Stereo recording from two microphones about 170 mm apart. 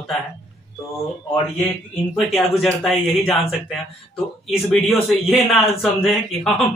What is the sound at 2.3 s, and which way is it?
Speech, centre (ahead or behind).